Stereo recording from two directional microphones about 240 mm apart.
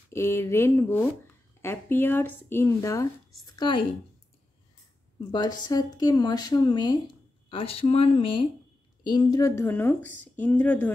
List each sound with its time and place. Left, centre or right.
0.1 s speech: centre
5.3 s speech: centre